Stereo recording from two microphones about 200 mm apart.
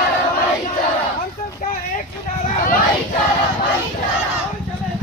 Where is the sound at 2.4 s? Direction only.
45° left (ahead or behind).